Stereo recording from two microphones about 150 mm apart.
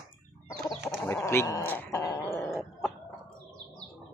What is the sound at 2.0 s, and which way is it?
Dog, 20° left (ahead or behind).